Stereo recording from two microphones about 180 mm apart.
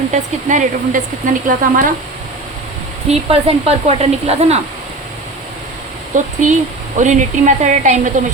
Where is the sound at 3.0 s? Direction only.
35° right (ahead or behind).